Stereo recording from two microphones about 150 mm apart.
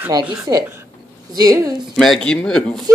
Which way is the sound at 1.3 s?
25° right (ahead or behind).